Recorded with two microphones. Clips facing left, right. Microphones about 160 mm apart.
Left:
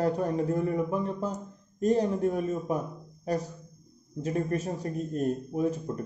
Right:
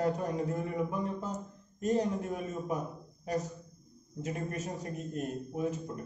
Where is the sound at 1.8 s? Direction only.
35° left (ahead or behind).